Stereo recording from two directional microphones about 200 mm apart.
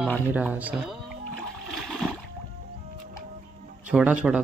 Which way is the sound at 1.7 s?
Centre (ahead or behind).